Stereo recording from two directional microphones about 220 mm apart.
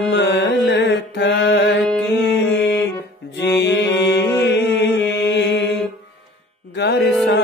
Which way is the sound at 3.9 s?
15° left (ahead or behind).